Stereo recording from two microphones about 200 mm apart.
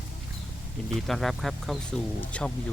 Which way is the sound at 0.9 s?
Centre (ahead or behind).